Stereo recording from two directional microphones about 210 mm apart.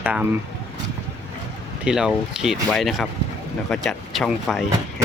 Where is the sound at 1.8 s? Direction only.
5° right (ahead or behind).